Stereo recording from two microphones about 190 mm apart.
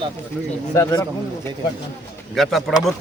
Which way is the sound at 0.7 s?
20° left (ahead or behind).